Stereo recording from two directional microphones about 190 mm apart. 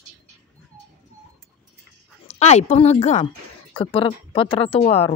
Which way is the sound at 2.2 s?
35° left (ahead or behind).